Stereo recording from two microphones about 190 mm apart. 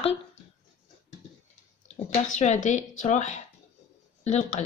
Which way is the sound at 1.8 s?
40° left (ahead or behind).